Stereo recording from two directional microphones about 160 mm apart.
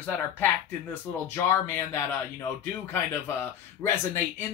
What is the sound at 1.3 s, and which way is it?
Speech, 15° left (ahead or behind).